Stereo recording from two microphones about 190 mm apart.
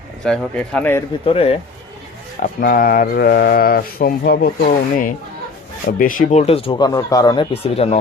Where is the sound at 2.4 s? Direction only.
50° left (ahead or behind).